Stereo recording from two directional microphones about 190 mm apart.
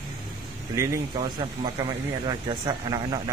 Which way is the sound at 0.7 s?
20° right (ahead or behind).